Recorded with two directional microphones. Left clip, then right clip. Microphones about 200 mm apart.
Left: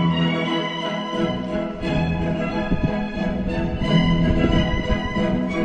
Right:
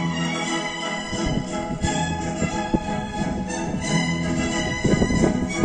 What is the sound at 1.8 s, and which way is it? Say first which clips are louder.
Music: left 1 dB; 25° left (ahead or behind).